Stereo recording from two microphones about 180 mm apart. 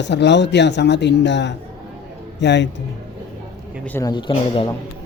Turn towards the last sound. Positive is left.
turn(degrees=30)  # may be behind; listen again after turning